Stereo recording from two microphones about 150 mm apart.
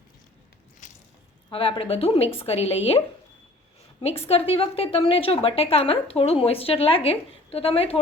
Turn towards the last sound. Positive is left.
turn(degrees=40)  # may be behind; listen again after turning